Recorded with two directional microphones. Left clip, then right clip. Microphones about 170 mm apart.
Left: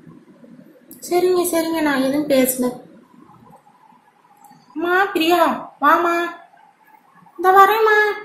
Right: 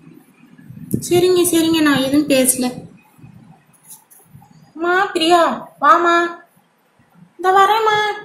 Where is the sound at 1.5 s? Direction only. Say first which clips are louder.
Right 4 dB; 30° right (ahead or behind).